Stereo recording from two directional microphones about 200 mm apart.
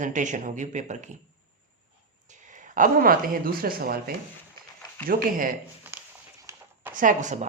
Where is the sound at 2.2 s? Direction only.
40° right (ahead or behind).